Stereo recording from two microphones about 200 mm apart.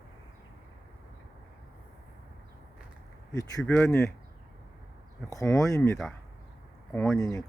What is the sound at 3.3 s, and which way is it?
Speech, 15° left (ahead or behind).